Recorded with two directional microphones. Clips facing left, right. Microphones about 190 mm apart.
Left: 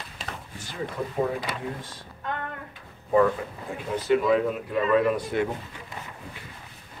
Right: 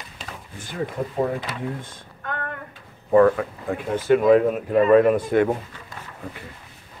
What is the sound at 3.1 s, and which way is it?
Speech, 55° right (ahead or behind).